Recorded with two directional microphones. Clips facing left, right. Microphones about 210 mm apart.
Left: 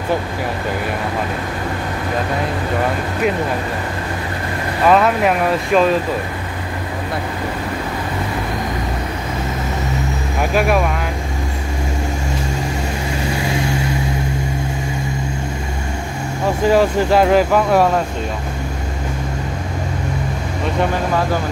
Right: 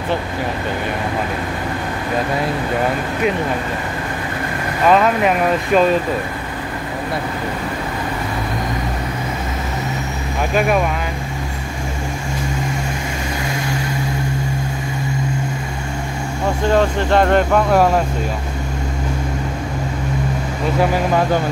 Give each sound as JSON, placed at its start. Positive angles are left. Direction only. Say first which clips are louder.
{"t": 4.8, "sound": "speech", "louder": "even", "side_deg": 0}
{"t": 16.6, "sound": "speech", "louder": "left 3 dB", "side_deg": 5}